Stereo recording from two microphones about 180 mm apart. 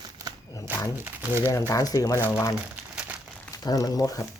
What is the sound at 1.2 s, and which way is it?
Speech, 15° right (ahead or behind).